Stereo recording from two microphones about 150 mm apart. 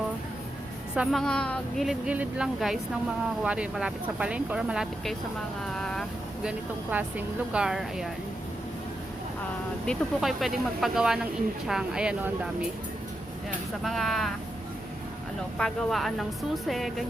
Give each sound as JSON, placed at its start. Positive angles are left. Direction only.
{"t": 0.9, "sound": "speech", "side_deg": 5}
{"t": 9.8, "sound": "speech", "side_deg": 0}
{"t": 13.8, "sound": "speech", "side_deg": 0}
{"t": 15.5, "sound": "speech", "side_deg": 5}